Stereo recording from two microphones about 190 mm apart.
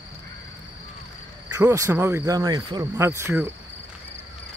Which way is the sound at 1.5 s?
15° right (ahead or behind).